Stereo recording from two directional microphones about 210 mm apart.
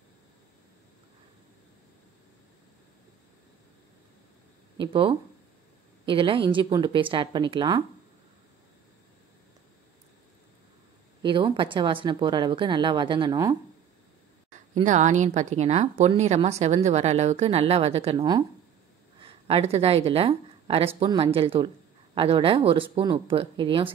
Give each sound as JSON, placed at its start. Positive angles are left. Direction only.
{"t": 4.7, "sound": "speech", "side_deg": -25}
{"t": 11.2, "sound": "speech", "side_deg": -25}
{"t": 14.5, "sound": "speech", "side_deg": -35}